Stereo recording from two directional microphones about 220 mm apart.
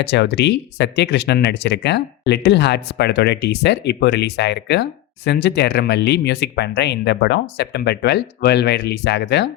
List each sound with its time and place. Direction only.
0.0 s speech: 50° left (ahead or behind)